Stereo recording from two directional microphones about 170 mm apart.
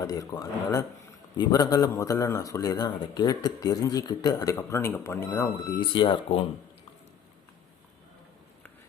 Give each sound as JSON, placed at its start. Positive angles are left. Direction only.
{"t": 0.0, "sound": "speech", "side_deg": 20}
{"t": 5.9, "sound": "speech", "side_deg": 30}